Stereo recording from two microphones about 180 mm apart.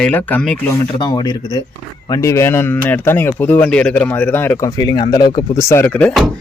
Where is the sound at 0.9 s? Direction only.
25° left (ahead or behind); by 6.4 s centre (ahead or behind).